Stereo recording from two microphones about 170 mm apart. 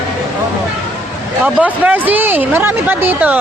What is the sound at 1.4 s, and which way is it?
Speech, 10° right (ahead or behind).